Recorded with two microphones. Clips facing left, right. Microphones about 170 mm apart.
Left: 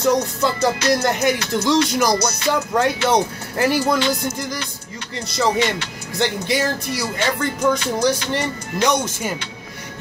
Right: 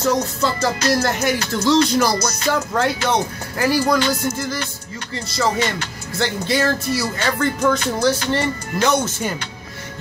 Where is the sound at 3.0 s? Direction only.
25° left (ahead or behind).